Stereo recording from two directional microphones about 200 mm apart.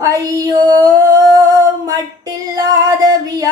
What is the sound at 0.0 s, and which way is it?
Female singing, 15° right (ahead or behind).